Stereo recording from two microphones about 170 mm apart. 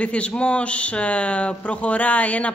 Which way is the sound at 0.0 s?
5° left (ahead or behind).